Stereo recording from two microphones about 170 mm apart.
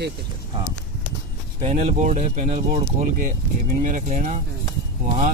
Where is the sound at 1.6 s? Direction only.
45° right (ahead or behind).